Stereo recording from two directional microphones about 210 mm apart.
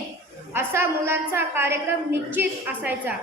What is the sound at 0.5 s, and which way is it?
A woman's voice, 10° right (ahead or behind).